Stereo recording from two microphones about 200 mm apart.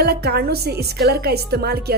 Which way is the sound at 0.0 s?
55° right (ahead or behind).